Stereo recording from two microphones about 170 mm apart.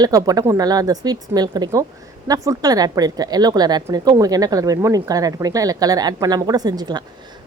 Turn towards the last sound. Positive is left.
turn(degrees=-25)  # may be behind; listen again after turning